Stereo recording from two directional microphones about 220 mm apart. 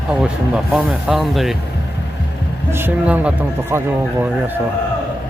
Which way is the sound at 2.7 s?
10° right (ahead or behind).